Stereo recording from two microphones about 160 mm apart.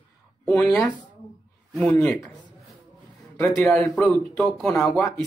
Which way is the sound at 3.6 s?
10° left (ahead or behind).